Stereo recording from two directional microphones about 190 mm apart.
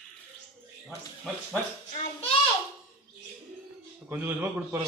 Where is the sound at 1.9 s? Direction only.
30° left (ahead or behind).